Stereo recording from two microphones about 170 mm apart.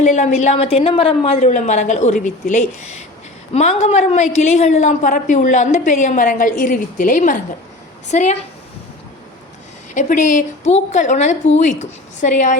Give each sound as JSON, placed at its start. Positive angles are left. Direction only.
{"t": 0.0, "sound": "a woman's voice", "side_deg": 45}
{"t": 9.9, "sound": "a woman's voice", "side_deg": 45}